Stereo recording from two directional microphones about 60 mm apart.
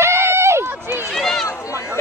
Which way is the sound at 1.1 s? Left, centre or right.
Centre.